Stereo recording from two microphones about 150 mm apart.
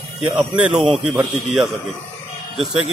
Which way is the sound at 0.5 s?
5° right (ahead or behind).